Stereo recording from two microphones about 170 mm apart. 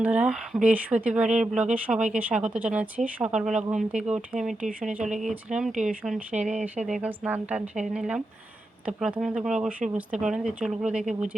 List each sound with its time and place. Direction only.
0.0 s speech: 10° right (ahead or behind)
6.3 s speech: 45° right (ahead or behind)
6.8 s speech: 5° right (ahead or behind)